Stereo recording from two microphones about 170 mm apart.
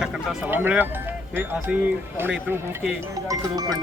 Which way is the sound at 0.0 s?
5° right (ahead or behind).